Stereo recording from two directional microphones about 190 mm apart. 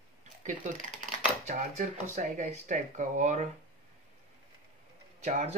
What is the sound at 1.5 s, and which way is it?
Speech, 40° right (ahead or behind).